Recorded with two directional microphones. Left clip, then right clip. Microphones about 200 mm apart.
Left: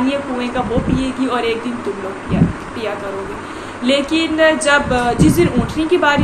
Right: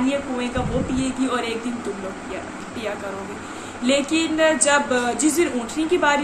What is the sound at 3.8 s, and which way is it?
A woman's voice, 20° right (ahead or behind).